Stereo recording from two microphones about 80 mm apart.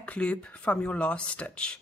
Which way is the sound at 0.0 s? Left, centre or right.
Centre.